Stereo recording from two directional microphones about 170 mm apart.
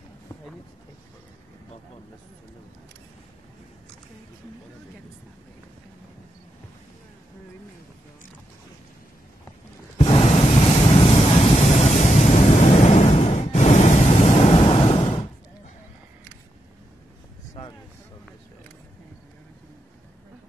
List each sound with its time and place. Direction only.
9.9 s ocean: 35° left (ahead or behind)